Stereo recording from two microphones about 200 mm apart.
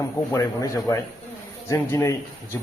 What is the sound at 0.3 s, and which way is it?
Speech, 15° left (ahead or behind).